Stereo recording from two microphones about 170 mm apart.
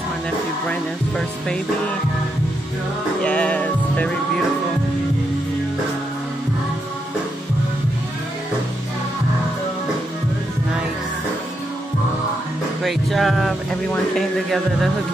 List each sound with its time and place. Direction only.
0.7 s speech: 5° left (ahead or behind)
3.2 s music: 5° left (ahead or behind)
12.8 s speech: centre (ahead or behind)